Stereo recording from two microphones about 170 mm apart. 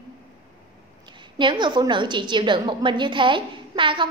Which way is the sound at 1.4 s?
25° right (ahead or behind).